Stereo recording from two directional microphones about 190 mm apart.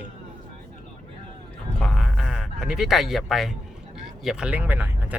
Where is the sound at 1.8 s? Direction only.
Centre (ahead or behind).